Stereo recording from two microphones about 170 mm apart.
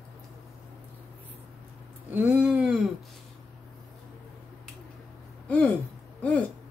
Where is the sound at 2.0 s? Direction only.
10° right (ahead or behind).